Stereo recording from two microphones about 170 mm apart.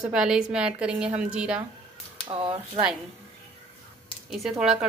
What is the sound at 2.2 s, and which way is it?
Speech, 25° right (ahead or behind).